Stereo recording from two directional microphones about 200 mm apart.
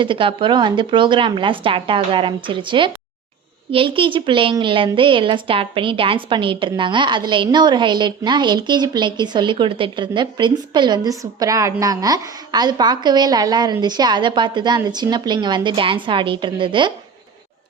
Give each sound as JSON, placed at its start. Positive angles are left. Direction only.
{"t": 0.0, "sound": "a woman's voice", "side_deg": -25}